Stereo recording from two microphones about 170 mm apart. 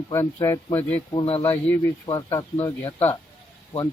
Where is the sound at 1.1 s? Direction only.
35° left (ahead or behind).